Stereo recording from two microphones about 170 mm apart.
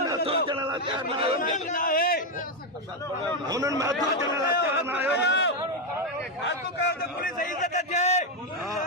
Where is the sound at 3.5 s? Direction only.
20° right (ahead or behind).